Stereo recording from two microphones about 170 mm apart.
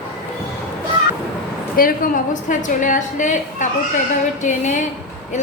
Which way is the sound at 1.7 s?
55° left (ahead or behind).